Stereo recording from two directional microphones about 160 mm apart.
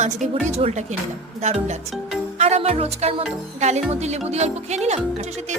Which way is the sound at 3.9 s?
40° right (ahead or behind).